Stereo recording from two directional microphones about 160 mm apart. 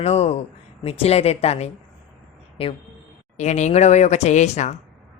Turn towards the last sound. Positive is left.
turn(degrees=45)  # may be behind; listen again after turning